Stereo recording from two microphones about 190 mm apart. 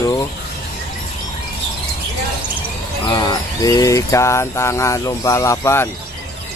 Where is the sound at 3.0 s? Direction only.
20° left (ahead or behind).